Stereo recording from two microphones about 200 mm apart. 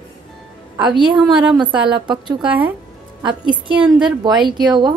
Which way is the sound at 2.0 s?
25° right (ahead or behind).